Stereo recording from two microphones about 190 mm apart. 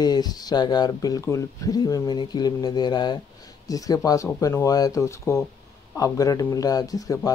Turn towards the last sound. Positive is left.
turn(degrees=20)  # may be behind; listen again after turning